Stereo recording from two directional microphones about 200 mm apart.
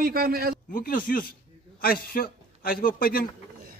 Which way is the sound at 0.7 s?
45° left (ahead or behind).